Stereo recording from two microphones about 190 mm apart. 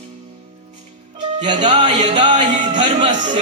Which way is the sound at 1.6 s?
40° right (ahead or behind).